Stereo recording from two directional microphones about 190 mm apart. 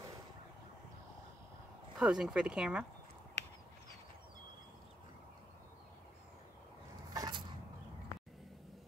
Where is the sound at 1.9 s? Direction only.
5° right (ahead or behind).